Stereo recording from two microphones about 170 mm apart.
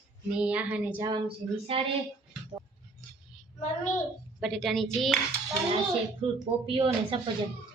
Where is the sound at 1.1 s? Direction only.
35° right (ahead or behind).